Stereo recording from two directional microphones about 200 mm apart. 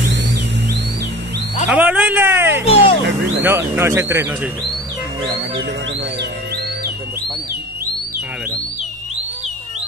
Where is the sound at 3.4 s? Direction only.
15° right (ahead or behind).